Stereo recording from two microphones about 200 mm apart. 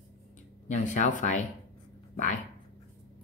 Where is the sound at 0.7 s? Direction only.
35° left (ahead or behind).